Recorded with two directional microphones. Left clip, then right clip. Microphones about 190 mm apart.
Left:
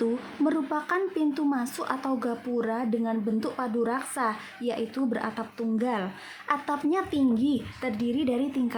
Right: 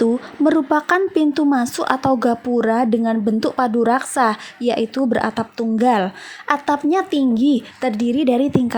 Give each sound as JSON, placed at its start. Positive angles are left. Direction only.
{"t": 0.0, "sound": "speech", "side_deg": -35}